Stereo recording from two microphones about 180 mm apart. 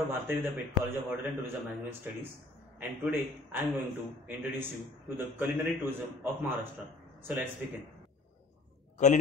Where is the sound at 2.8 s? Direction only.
10° right (ahead or behind).